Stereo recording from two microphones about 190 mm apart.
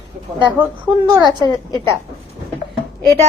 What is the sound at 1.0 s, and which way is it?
Speech, 20° right (ahead or behind).